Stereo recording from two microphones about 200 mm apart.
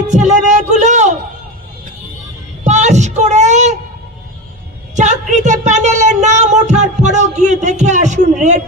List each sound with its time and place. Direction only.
0.1 s speech: 35° right (ahead or behind)
2.6 s a sound: 35° right (ahead or behind)
4.9 s speech: 35° right (ahead or behind)